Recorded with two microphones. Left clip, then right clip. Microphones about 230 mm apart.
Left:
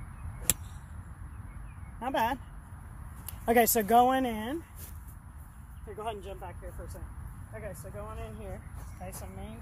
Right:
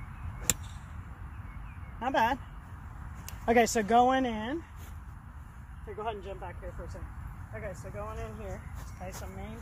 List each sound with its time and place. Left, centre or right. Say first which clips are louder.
0.5 s whip: right 2 dB; centre
2.0 s speech: right 2 dB; centre
3.4 s speech: even; left
5.9 s speech: right 1 dB; left
7.5 s speech: right 2 dB; centre